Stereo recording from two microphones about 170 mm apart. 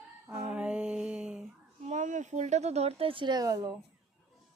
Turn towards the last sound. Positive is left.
turn(degrees=-20)  # may be behind; listen again after turning